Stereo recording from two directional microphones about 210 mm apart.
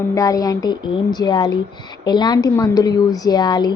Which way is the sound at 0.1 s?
15° left (ahead or behind).